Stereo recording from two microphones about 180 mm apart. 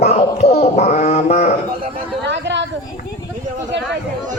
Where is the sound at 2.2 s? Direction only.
75° right (ahead or behind).